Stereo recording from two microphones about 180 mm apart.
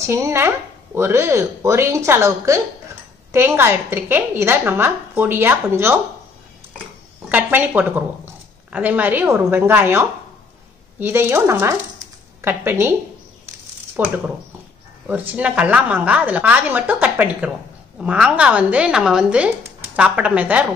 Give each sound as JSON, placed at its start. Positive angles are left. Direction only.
{"t": 0.0, "sound": "a woman's voice", "side_deg": -15}
{"t": 7.2, "sound": "a woman's voice", "side_deg": -10}
{"t": 13.9, "sound": "a woman's voice", "side_deg": -10}